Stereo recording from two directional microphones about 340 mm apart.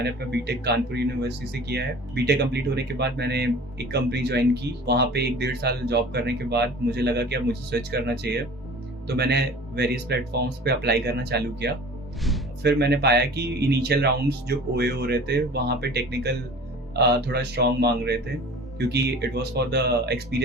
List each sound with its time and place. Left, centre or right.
0.0 s speech: right